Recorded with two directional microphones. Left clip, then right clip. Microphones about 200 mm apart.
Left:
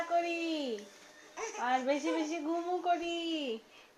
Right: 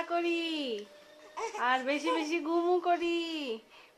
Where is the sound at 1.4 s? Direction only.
20° right (ahead or behind).